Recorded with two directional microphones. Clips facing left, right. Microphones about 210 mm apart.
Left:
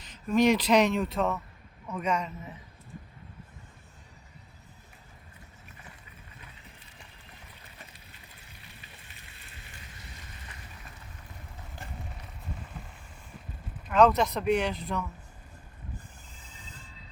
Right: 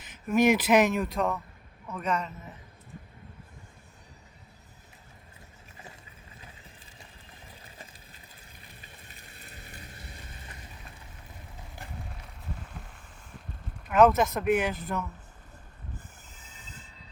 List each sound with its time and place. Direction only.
0.3 s a man's voice: 5° right (ahead or behind); by 2.3 s 10° left (ahead or behind)
9.5 s vehicle: 40° right (ahead or behind)
11.8 s a sound: centre (ahead or behind)
13.8 s speech: 5° right (ahead or behind)